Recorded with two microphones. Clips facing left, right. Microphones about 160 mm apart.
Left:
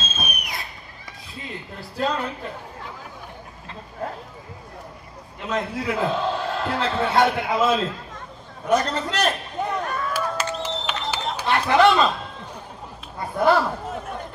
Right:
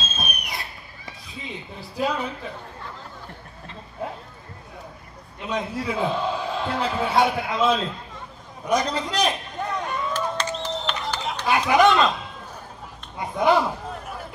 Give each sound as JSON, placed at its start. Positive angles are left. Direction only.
{"t": 0.2, "sound": "fireworks", "side_deg": 0}
{"t": 1.3, "sound": "speech", "side_deg": 0}
{"t": 5.4, "sound": "a man's voice", "side_deg": 0}
{"t": 8.7, "sound": "a man's voice", "side_deg": -15}
{"t": 9.6, "sound": "a sound", "side_deg": 10}
{"t": 9.8, "sound": "a sound", "side_deg": -20}
{"t": 10.3, "sound": "a sound", "side_deg": 10}
{"t": 11.4, "sound": "a man's voice", "side_deg": -10}
{"t": 11.9, "sound": "a man's voice", "side_deg": 5}
{"t": 13.2, "sound": "a man's voice", "side_deg": -15}
{"t": 13.8, "sound": "chatter", "side_deg": 0}